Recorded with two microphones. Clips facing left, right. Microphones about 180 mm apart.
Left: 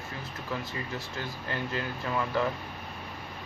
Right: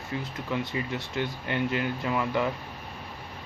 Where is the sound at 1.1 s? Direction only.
20° right (ahead or behind).